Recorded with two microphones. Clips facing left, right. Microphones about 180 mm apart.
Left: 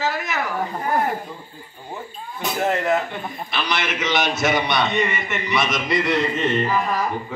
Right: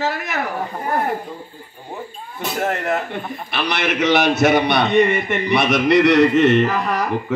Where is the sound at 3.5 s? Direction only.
60° right (ahead or behind).